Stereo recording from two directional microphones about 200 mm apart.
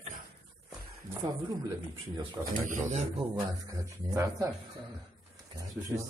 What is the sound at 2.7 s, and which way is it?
Speech, 35° right (ahead or behind).